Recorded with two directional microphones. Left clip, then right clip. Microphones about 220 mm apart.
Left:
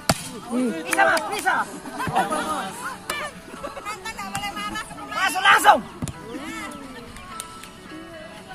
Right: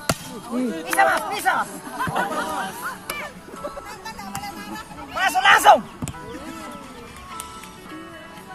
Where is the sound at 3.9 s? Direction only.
30° left (ahead or behind).